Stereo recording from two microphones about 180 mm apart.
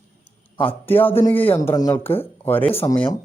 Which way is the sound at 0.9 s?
10° left (ahead or behind).